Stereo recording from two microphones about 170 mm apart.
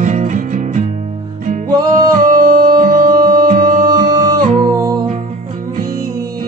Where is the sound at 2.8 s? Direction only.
55° right (ahead or behind).